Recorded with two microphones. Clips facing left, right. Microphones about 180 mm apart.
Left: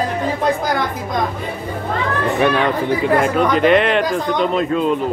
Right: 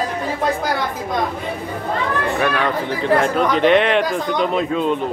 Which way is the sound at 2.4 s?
20° left (ahead or behind).